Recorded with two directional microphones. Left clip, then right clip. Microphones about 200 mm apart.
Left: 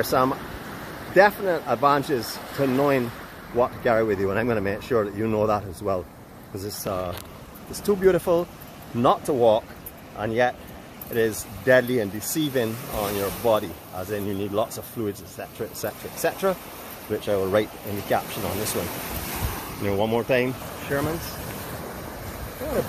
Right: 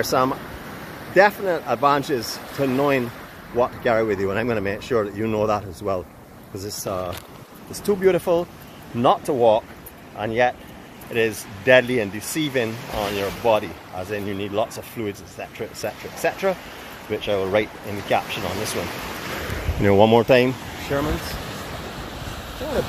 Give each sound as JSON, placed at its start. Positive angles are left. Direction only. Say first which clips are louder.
{"t": 0.0, "sound": "speech", "louder": "right 1 dB", "side_deg": 0}
{"t": 19.8, "sound": "speech", "louder": "right 9 dB", "side_deg": -35}
{"t": 20.9, "sound": "speech", "louder": "right 2 dB", "side_deg": -10}